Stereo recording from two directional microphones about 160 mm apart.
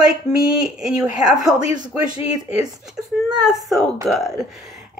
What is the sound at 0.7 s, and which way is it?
Speech, 5° right (ahead or behind).